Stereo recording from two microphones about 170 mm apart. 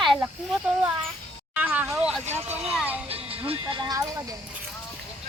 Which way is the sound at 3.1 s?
35° right (ahead or behind).